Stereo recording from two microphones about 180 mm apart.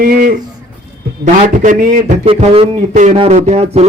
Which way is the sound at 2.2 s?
30° right (ahead or behind).